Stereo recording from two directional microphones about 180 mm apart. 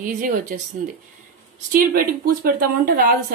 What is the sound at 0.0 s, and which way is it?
Speech, 45° right (ahead or behind).